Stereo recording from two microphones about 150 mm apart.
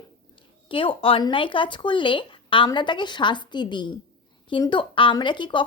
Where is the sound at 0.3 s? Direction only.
35° left (ahead or behind).